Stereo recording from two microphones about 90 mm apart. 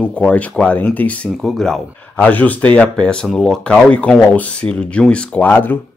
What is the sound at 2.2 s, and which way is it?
A man's voice, 15° left (ahead or behind).